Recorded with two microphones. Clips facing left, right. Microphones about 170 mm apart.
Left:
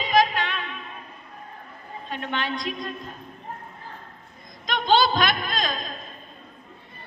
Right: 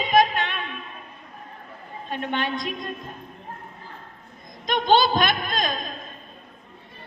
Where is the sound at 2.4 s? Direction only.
50° right (ahead or behind).